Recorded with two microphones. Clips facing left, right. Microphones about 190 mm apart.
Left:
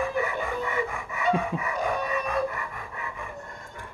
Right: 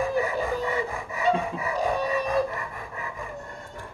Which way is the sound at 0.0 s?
35° right (ahead or behind).